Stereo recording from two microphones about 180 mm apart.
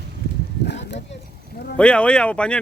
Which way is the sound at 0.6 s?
70° left (ahead or behind).